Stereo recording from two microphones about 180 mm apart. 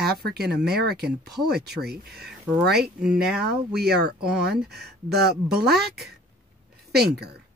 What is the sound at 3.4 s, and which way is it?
Speech, 60° right (ahead or behind).